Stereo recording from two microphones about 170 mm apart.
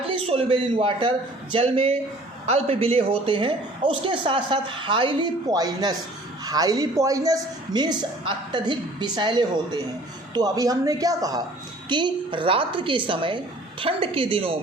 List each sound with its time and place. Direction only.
0.3 s a woman's voice: 35° right (ahead or behind)